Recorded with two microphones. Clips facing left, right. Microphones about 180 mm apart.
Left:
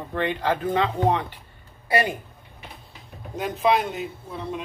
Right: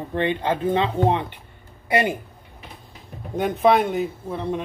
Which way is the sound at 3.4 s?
60° right (ahead or behind).